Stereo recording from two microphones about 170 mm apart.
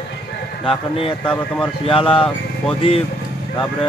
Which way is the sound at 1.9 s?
30° left (ahead or behind).